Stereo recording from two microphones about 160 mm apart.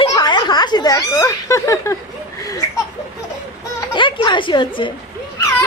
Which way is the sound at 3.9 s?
30° left (ahead or behind).